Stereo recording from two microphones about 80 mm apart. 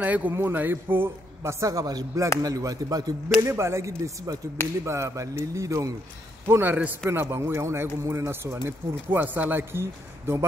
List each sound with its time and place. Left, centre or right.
0.0 s a man's voice: right
3.3 s a man's voice: right
4.3 s speech: right
4.8 s a man's voice: right
6.4 s a man's voice: right
8.6 s speech: right